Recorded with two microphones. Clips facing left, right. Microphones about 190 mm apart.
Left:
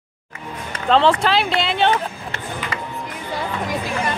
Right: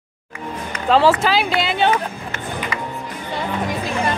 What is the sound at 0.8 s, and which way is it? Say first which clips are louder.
Speech: right 1 dB; 5° right (ahead or behind).